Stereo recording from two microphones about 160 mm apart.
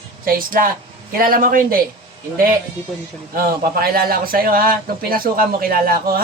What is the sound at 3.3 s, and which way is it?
A man's voice, 65° right (ahead or behind).